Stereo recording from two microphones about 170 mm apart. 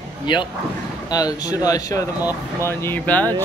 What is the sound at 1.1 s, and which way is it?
A man's voice, 20° left (ahead or behind).